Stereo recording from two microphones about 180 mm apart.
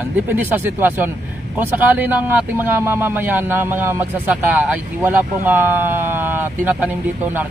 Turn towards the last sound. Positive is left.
turn(degrees=-10)  # may be behind; listen again after turning